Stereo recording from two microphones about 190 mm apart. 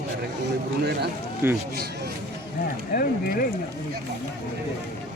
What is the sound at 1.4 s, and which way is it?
Speech, 15° right (ahead or behind).